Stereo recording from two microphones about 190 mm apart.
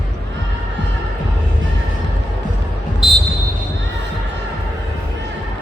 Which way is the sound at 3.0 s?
Centre (ahead or behind).